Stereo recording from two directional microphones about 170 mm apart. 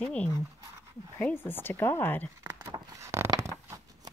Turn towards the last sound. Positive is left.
turn(degrees=-20)  # may be behind; listen again after turning